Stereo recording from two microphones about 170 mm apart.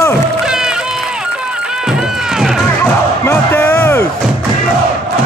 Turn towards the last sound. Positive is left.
turn(degrees=15)  # may be behind; listen again after turning